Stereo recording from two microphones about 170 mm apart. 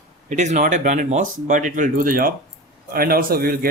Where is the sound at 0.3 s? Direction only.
45° right (ahead or behind).